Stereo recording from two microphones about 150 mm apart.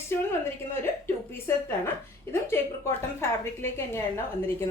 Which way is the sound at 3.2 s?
15° left (ahead or behind).